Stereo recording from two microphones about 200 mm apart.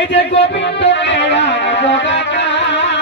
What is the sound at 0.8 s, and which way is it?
Music, 60° left (ahead or behind).